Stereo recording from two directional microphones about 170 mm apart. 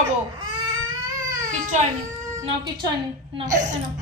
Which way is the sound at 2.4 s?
25° right (ahead or behind).